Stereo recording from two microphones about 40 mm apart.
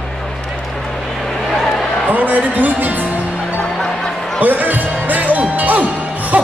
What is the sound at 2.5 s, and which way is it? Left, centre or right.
Music, right.